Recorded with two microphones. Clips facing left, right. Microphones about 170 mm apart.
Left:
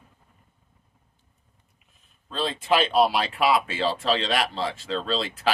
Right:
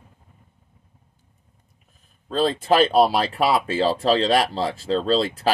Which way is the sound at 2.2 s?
40° right (ahead or behind).